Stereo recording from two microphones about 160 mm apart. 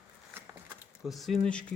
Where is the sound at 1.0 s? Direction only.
Centre (ahead or behind).